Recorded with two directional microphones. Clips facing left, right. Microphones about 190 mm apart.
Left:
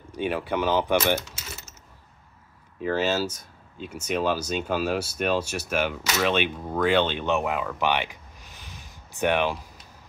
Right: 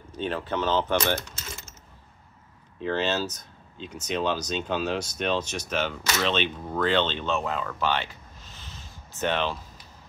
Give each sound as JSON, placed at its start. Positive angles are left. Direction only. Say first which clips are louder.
{"t": 0.1, "sound": "speech", "louder": "left 2 dB", "side_deg": 10}
{"t": 2.8, "sound": "speech", "louder": "left 2 dB", "side_deg": 10}